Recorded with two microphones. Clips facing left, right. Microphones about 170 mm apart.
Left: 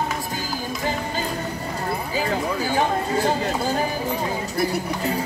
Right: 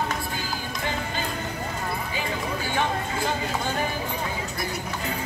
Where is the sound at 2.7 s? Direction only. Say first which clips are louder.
Left 5 dB; 35° left (ahead or behind).